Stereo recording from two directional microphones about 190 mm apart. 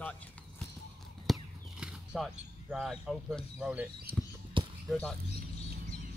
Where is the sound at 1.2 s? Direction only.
Centre (ahead or behind).